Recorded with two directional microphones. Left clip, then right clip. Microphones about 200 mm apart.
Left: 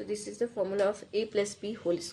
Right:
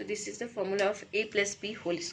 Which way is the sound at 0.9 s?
45° left (ahead or behind).